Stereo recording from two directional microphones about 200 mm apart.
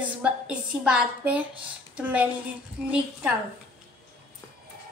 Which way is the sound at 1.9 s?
5° right (ahead or behind).